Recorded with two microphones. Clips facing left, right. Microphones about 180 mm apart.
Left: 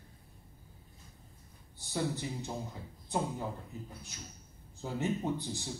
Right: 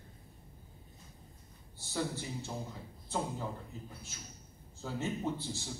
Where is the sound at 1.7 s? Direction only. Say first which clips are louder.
Left 2 dB; 15° left (ahead or behind).